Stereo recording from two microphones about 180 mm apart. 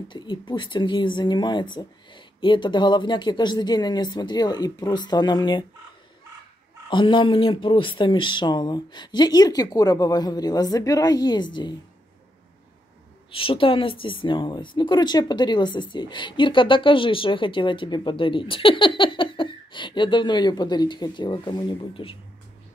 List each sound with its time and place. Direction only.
0.1 s speech: 25° left (ahead or behind)
6.9 s speech: 25° left (ahead or behind)
13.3 s a woman's voice: 30° left (ahead or behind)